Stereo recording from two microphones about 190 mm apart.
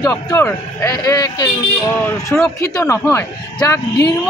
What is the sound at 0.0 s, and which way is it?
A man's voice, 15° left (ahead or behind).